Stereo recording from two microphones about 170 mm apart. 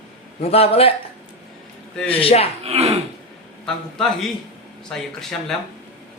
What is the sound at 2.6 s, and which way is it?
Speech, 40° right (ahead or behind).